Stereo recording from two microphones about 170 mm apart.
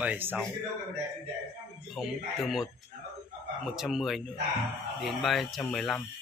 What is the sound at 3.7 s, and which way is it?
Speech, centre (ahead or behind).